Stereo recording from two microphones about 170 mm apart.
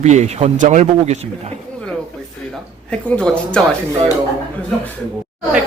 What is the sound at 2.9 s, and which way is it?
Speech, 5° left (ahead or behind).